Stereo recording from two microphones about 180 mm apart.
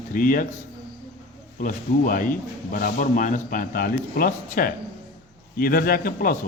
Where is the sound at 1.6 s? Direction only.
50° left (ahead or behind).